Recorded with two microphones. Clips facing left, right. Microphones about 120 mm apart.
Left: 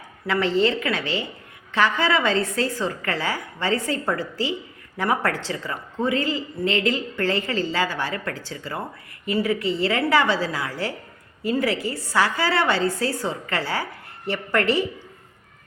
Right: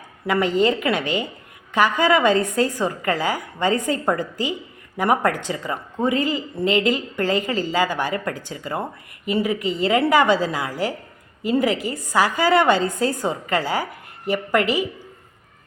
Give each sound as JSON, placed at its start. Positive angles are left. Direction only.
{"t": 0.3, "sound": "a woman's voice", "side_deg": -15}